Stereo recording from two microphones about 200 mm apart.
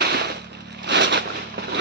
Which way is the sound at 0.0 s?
55° right (ahead or behind).